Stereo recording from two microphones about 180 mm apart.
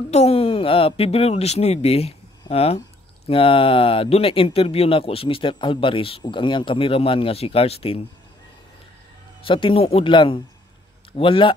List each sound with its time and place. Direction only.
0.1 s speech: 35° left (ahead or behind)
9.5 s speech: 30° left (ahead or behind)